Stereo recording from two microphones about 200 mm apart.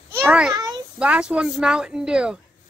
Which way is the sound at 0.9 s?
5° right (ahead or behind).